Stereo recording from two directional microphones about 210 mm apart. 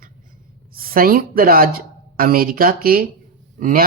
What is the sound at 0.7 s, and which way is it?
A woman's voice, 45° right (ahead or behind).